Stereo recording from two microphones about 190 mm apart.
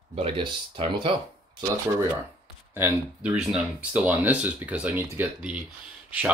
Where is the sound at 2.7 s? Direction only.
10° right (ahead or behind).